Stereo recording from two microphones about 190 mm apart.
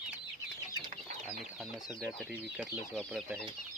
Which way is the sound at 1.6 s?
Centre (ahead or behind).